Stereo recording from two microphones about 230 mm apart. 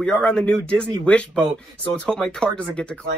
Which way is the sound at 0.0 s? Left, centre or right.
Centre.